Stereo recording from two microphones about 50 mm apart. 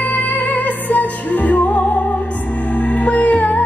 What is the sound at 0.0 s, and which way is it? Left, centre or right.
Music, left.